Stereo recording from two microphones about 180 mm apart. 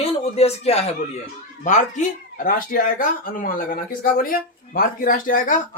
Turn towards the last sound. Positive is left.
turn(degrees=50)  # may be behind; listen again after turning